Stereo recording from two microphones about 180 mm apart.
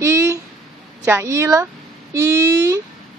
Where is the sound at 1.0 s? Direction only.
15° right (ahead or behind).